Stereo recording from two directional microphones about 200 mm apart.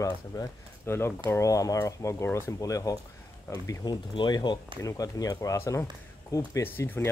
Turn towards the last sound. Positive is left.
turn(degrees=10)  # may be behind; listen again after turning